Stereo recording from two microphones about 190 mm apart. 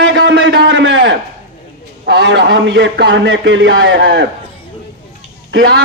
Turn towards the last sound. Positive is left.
turn(degrees=-65)  # may be behind; listen again after turning